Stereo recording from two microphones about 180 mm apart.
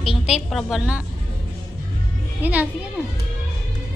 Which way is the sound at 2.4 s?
10° right (ahead or behind).